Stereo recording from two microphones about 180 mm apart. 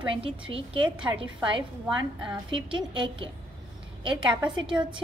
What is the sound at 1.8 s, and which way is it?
Speech, 5° right (ahead or behind).